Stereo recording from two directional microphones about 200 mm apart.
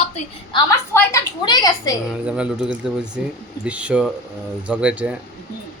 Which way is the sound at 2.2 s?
5° right (ahead or behind).